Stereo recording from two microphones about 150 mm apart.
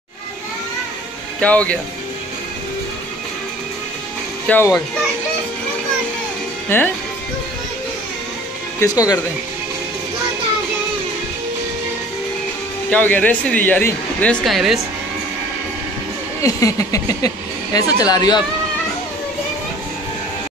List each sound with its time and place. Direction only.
1.4 s speech: 10° left (ahead or behind)
4.5 s speech: 10° left (ahead or behind)
6.7 s speech: 15° left (ahead or behind)
8.7 s a sound: 25° left (ahead or behind)
12.9 s speech: 10° left (ahead or behind)
14.4 s speech: centre (ahead or behind)
16.4 s a sound: 20° left (ahead or behind)